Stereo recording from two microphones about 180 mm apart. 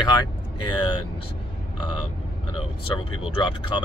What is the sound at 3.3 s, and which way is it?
Speech, 25° left (ahead or behind).